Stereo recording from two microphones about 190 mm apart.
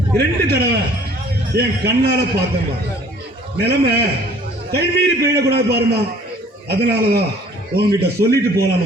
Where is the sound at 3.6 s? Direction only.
55° right (ahead or behind).